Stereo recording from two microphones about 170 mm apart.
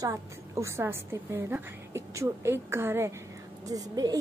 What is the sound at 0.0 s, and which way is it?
A woman's voice, 15° right (ahead or behind).